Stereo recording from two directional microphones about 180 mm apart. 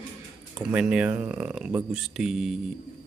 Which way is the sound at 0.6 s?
5° right (ahead or behind).